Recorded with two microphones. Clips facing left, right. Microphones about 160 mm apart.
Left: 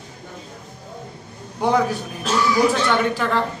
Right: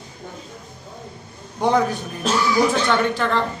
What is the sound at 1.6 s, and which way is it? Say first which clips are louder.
Speech: even; 5° left (ahead or behind).